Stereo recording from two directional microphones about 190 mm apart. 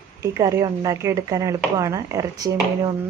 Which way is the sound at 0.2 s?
15° right (ahead or behind).